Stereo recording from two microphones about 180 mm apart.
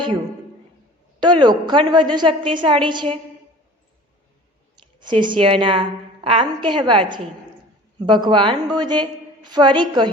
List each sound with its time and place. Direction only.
1.2 s a woman's voice: 25° right (ahead or behind)
4.9 s a woman's voice: 25° right (ahead or behind)